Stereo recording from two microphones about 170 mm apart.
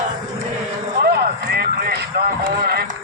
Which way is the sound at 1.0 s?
75° right (ahead or behind).